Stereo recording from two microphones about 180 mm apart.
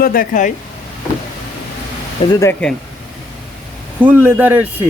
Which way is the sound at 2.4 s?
10° left (ahead or behind).